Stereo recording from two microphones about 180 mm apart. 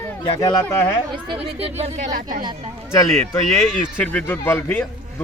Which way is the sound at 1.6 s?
35° right (ahead or behind).